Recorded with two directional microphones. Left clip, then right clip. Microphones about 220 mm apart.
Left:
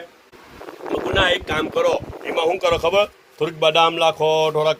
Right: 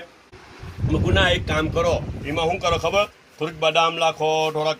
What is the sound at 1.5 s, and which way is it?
Speech, 45° left (ahead or behind).